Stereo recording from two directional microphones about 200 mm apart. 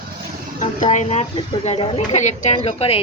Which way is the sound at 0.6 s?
40° left (ahead or behind).